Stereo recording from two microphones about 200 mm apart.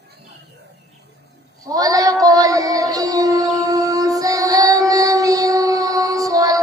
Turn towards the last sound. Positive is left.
turn(degrees=-15)  # may be behind; listen again after turning